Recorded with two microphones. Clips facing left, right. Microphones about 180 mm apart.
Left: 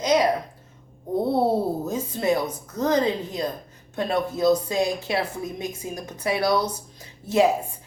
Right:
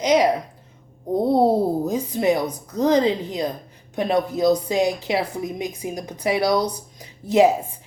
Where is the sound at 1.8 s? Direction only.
15° right (ahead or behind).